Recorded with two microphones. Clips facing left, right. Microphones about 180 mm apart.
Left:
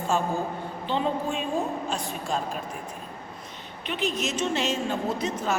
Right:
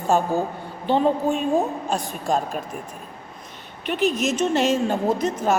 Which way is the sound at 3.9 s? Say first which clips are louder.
Right 7 dB; 50° right (ahead or behind).